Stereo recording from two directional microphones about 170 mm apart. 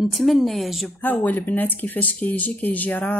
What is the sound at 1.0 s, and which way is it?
Speech, 10° left (ahead or behind).